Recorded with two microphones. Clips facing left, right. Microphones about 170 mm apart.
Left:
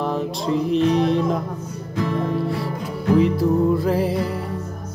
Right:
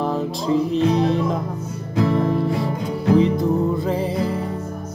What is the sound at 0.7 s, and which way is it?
Music, 35° right (ahead or behind).